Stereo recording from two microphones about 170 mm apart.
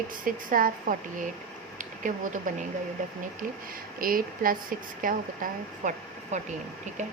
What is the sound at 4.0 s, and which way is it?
A woman's voice, 55° right (ahead or behind).